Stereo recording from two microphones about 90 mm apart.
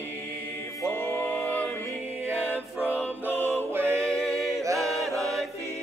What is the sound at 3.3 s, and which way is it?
Music, 20° left (ahead or behind).